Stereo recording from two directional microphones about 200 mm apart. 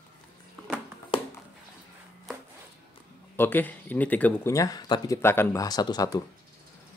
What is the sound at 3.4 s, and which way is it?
Speech, 10° left (ahead or behind).